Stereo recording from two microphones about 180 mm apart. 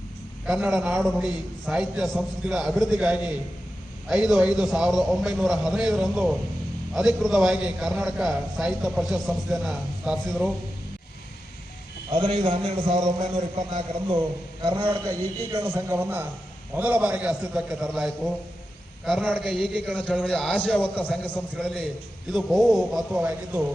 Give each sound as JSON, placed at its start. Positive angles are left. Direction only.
{"t": 0.4, "sound": "a man's voice", "side_deg": 0}
{"t": 12.1, "sound": "a man's voice", "side_deg": -30}